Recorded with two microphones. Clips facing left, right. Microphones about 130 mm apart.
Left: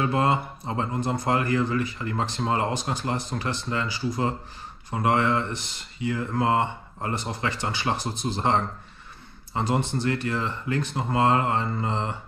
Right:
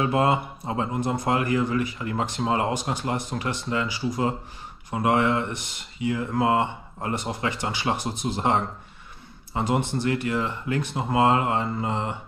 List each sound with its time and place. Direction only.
0.1 s speech: 20° right (ahead or behind)
9.6 s speech: 15° right (ahead or behind)